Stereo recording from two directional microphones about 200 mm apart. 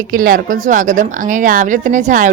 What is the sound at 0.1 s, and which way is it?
Speech, 45° right (ahead or behind).